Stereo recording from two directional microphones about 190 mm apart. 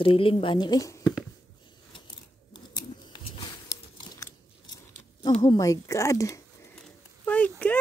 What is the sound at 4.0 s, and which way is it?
Chewing, 20° left (ahead or behind).